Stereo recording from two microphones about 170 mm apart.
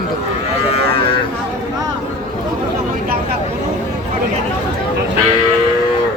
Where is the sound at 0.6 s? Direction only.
35° left (ahead or behind).